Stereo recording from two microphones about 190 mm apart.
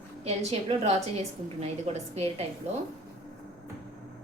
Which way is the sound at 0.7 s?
35° right (ahead or behind).